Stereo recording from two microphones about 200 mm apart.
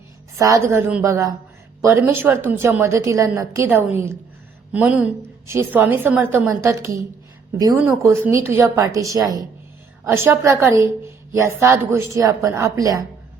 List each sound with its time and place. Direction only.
0.3 s a woman's voice: 15° right (ahead or behind)